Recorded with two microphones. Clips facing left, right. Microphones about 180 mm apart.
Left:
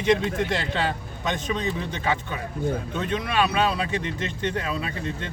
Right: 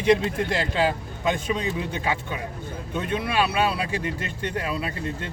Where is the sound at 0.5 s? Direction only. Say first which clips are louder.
Right 3 dB; 5° right (ahead or behind).